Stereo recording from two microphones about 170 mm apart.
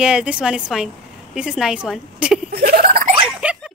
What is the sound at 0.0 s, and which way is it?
A woman's voice, 5° right (ahead or behind).